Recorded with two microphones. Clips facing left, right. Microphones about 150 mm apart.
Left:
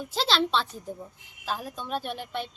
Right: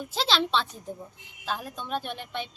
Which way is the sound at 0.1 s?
Centre (ahead or behind).